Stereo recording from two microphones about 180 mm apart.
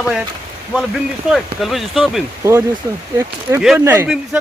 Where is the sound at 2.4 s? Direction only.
15° right (ahead or behind).